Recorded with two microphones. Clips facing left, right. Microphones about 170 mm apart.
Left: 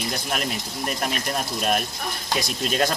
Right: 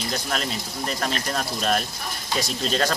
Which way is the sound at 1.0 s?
15° left (ahead or behind).